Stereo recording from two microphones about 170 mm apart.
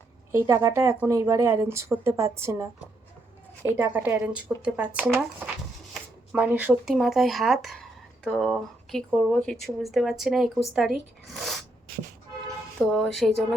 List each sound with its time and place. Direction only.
0.3 s a woman's voice: 20° right (ahead or behind); by 11.6 s centre (ahead or behind)
12.9 s speech: centre (ahead or behind)